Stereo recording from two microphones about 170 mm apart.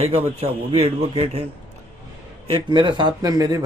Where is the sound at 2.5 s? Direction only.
30° right (ahead or behind).